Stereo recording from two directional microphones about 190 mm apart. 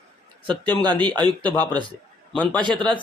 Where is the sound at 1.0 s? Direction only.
25° right (ahead or behind).